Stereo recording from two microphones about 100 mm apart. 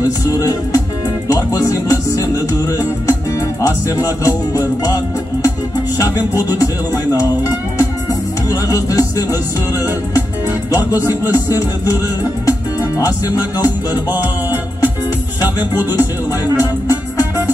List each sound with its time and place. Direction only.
0.3 s music: 35° left (ahead or behind)
7.2 s music: 30° left (ahead or behind)
10.8 s music: 35° left (ahead or behind)
15.7 s music: 40° left (ahead or behind)